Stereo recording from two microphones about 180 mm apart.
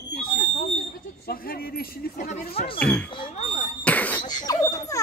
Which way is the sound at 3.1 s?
30° left (ahead or behind).